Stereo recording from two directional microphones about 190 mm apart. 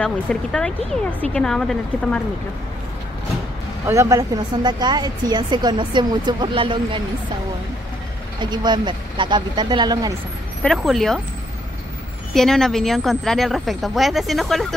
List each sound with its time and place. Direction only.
0.0 s a woman's voice: 5° left (ahead or behind)
3.8 s speech: 15° right (ahead or behind)
8.4 s speech: 25° right (ahead or behind)
10.6 s a woman's voice: centre (ahead or behind)
12.4 s a woman's voice: centre (ahead or behind)